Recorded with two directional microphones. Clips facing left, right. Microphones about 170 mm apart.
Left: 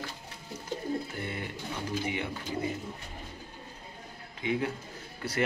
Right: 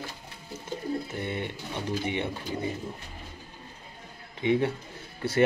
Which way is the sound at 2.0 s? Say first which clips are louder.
Right 3 dB; 30° right (ahead or behind).